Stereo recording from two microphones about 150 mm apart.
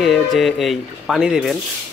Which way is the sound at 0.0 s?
Centre (ahead or behind).